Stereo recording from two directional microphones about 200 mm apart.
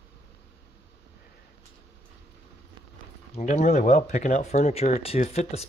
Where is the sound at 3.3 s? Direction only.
35° left (ahead or behind).